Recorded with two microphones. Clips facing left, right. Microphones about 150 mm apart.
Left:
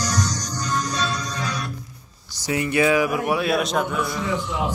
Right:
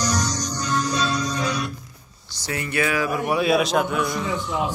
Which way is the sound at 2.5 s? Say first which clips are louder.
Left 5 dB; 20° left (ahead or behind).